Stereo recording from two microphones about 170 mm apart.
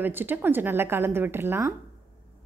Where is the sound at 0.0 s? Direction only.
10° right (ahead or behind).